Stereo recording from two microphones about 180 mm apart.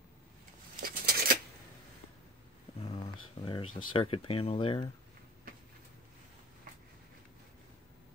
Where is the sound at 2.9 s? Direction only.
30° left (ahead or behind).